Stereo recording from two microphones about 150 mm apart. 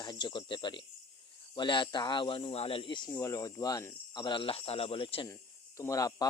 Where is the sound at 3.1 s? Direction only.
20° left (ahead or behind); by 5.3 s 35° left (ahead or behind).